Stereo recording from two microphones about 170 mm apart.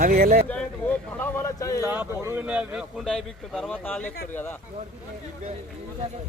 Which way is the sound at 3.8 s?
10° left (ahead or behind).